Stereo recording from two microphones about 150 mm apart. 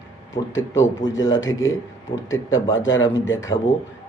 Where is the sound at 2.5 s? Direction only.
20° left (ahead or behind).